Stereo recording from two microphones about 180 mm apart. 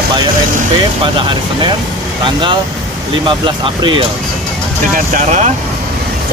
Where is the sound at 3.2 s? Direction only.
25° right (ahead or behind).